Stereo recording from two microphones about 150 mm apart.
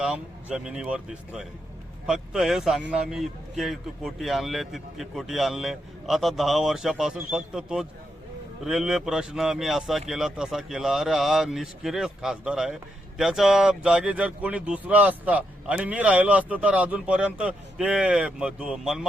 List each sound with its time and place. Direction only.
0.0 s speech: 5° right (ahead or behind)